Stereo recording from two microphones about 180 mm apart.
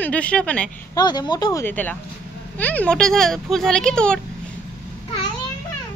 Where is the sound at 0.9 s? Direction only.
25° left (ahead or behind); by 4.2 s 5° left (ahead or behind).